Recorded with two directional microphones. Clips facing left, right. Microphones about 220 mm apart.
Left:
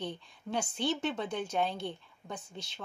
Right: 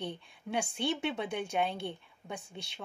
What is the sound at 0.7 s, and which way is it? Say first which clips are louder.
Speech: left 2 dB; 10° right (ahead or behind).